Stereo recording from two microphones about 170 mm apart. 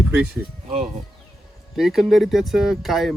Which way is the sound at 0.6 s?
45° right (ahead or behind).